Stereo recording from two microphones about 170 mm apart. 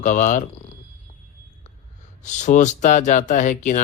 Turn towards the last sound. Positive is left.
turn(degrees=50)  # may be behind; listen again after turning